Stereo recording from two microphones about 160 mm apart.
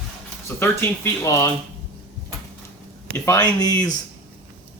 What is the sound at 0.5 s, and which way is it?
Speech, 15° left (ahead or behind).